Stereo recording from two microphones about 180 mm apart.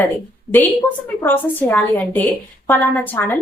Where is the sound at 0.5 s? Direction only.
10° left (ahead or behind).